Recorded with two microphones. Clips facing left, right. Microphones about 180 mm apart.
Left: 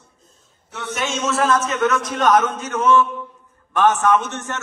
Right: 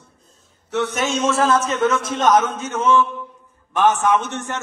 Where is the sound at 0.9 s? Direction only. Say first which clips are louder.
Even; 40° right (ahead or behind).